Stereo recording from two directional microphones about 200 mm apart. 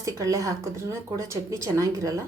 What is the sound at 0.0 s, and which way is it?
A woman's voice, 15° right (ahead or behind).